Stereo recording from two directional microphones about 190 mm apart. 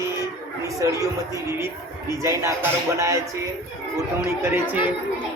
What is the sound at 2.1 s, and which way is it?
Speech, 15° right (ahead or behind).